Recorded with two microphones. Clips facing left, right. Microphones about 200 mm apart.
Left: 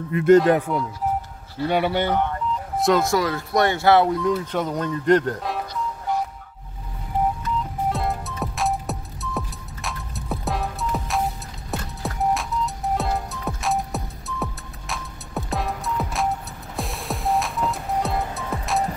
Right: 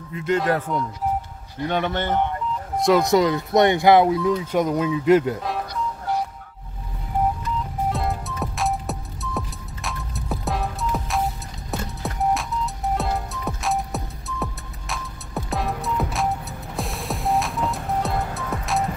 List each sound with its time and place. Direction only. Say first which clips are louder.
0.1 s speech: left 9 dB; 55° left (ahead or behind)
0.7 s a man's voice: even; 5° left (ahead or behind)
3.1 s speech: right 4 dB; 20° right (ahead or behind)
4.1 s speech: right 1 dB; centre (ahead or behind)
7.9 s music: even; centre (ahead or behind)